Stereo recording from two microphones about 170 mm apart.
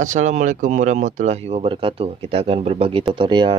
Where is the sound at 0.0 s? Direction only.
45° right (ahead or behind).